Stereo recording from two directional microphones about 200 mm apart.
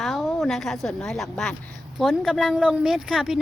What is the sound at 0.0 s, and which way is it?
A woman's voice, centre (ahead or behind).